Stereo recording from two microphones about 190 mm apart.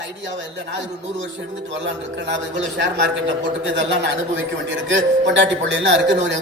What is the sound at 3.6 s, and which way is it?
A man's voice, 70° right (ahead or behind).